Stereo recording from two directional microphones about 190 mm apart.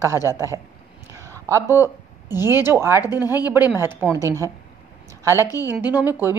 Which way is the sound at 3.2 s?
20° left (ahead or behind).